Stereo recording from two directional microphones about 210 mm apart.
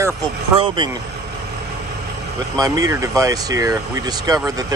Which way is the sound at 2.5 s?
15° right (ahead or behind).